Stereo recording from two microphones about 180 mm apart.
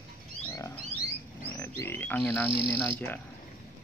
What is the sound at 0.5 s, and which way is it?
Pig, 15° left (ahead or behind).